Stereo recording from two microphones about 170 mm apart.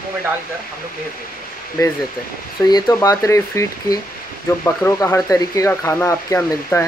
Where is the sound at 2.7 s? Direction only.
20° left (ahead or behind).